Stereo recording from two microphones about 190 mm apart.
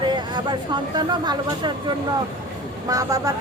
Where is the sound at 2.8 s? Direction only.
20° right (ahead or behind).